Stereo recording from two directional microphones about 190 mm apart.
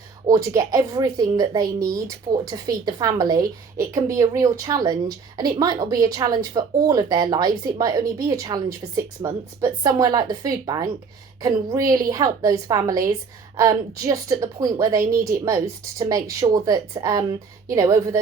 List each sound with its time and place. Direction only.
0.3 s a woman's voice: 15° right (ahead or behind)